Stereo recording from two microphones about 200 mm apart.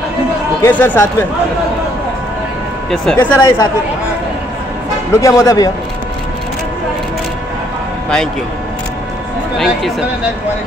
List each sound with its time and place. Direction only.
0.6 s speech: 10° left (ahead or behind)
2.9 s speech: 5° left (ahead or behind)
5.1 s speech: 15° left (ahead or behind)
9.6 s speech: centre (ahead or behind)